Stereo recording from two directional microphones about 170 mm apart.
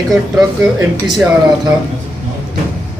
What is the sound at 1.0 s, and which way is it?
Speech, centre (ahead or behind).